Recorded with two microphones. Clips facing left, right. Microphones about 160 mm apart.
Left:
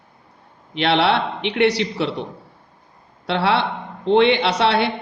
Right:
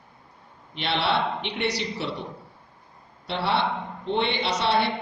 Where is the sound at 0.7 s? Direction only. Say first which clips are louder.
Left 7 dB; 65° left (ahead or behind).